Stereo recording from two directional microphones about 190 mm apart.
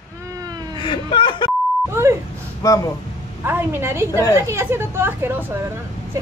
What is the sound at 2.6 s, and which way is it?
Speech, 20° left (ahead or behind).